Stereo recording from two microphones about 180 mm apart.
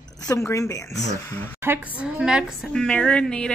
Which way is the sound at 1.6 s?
10° right (ahead or behind).